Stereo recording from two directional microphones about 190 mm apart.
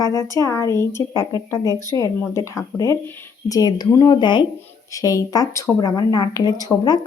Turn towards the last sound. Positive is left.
turn(degrees=20)  # may be behind; listen again after turning